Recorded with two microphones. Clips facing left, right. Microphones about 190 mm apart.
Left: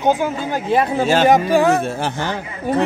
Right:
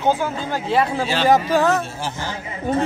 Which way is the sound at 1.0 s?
50° left (ahead or behind).